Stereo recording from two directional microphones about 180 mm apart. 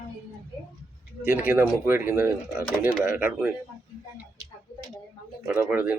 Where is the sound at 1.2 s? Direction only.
10° right (ahead or behind).